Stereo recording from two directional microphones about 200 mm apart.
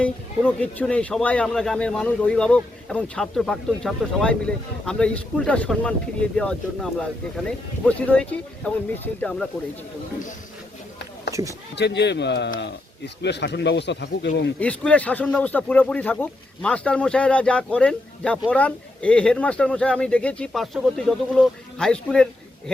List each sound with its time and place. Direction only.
0.0 s speech: 5° left (ahead or behind)
11.3 s speech: 15° right (ahead or behind)
11.8 s a man's voice: 60° left (ahead or behind)
14.6 s speech: 5° left (ahead or behind)